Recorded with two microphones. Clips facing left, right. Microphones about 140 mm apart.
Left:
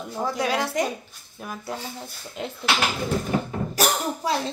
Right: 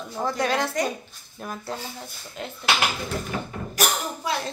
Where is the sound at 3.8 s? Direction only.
30° left (ahead or behind).